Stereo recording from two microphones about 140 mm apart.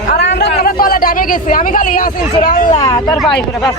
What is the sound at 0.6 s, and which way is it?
Speech, 90° left.